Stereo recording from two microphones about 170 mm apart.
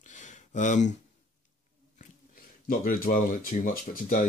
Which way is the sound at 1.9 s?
55° left (ahead or behind).